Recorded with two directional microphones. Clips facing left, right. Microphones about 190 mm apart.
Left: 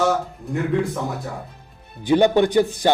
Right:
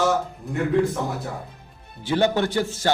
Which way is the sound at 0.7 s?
Centre (ahead or behind).